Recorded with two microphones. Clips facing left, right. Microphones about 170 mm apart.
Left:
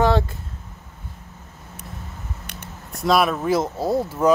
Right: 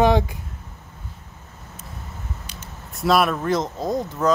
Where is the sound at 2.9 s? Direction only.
Centre (ahead or behind).